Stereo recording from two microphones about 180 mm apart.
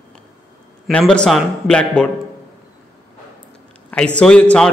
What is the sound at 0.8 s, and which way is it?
A man's voice, 5° left (ahead or behind).